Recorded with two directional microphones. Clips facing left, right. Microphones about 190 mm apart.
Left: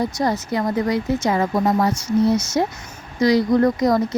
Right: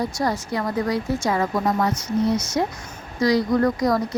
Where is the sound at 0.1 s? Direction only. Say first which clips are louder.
Left 3 dB; 20° left (ahead or behind).